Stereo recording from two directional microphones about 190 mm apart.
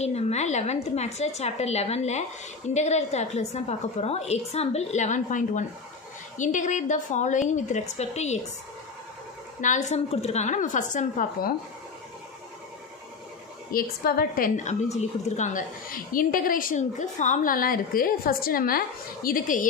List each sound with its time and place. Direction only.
0.0 s a woman's voice: 35° left (ahead or behind)
9.6 s a woman's voice: 40° left (ahead or behind)
13.7 s a woman's voice: 50° left (ahead or behind)